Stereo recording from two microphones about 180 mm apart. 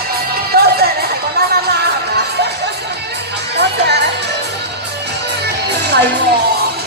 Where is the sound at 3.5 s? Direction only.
70° right (ahead or behind).